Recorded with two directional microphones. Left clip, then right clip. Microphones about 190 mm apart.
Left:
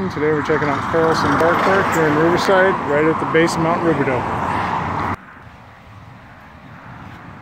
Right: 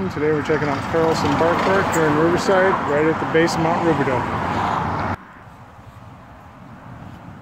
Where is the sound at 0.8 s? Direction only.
45° right (ahead or behind).